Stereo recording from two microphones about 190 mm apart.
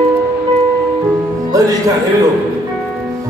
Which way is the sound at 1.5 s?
20° right (ahead or behind).